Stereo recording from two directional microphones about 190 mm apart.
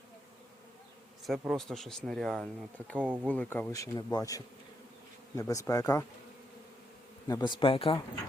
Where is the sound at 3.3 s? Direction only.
10° left (ahead or behind).